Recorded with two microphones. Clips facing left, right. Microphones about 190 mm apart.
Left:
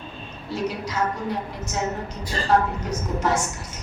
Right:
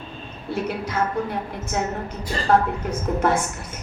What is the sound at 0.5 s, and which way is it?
Speech, 55° right (ahead or behind).